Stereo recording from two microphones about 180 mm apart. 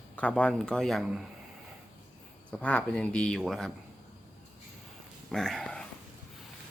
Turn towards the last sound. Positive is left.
turn(degrees=5)  # may be behind; listen again after turning